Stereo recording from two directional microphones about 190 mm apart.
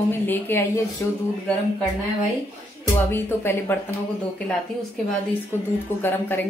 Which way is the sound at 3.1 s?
10° left (ahead or behind).